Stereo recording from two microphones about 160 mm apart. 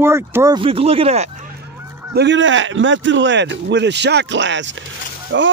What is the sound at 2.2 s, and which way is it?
Speech, 80° right.